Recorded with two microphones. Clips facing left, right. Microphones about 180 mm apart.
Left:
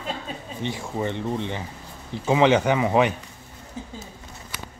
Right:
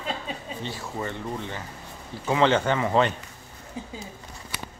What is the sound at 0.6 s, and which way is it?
Speech, 20° left (ahead or behind).